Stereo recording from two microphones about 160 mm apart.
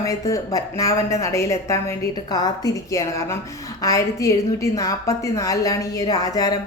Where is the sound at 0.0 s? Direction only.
20° left (ahead or behind).